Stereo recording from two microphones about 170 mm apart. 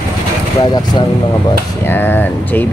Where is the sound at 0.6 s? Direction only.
25° left (ahead or behind).